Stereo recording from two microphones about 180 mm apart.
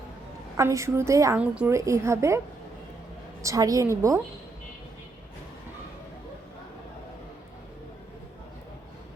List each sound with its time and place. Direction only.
0.5 s a woman's voice: 15° right (ahead or behind)
3.4 s a woman's voice: 20° right (ahead or behind)